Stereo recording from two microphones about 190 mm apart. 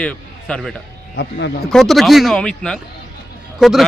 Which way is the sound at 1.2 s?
70° left (ahead or behind).